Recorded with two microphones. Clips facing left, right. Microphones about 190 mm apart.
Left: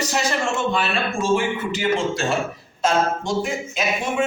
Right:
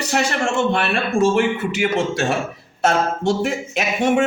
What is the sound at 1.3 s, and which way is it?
Speech, 65° right (ahead or behind).